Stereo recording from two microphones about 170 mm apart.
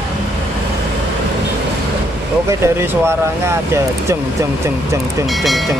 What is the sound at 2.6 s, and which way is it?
Speech, 15° right (ahead or behind).